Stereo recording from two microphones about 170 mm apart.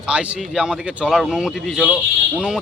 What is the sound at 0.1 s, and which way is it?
A man's voice, 5° right (ahead or behind).